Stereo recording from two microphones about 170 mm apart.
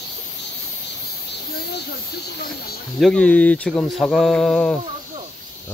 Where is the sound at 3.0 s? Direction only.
5° left (ahead or behind).